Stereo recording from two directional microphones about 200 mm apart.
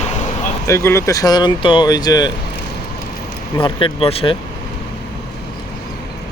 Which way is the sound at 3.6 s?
25° left (ahead or behind).